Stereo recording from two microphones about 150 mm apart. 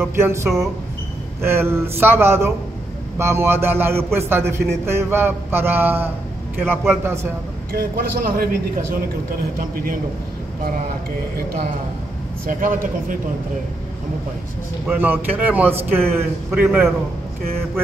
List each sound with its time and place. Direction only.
0.0 s a man's voice: 15° right (ahead or behind)
7.7 s a woman's voice: 80° right
12.4 s a man's voice: 65° right (ahead or behind)
14.9 s a man's voice: 15° right (ahead or behind)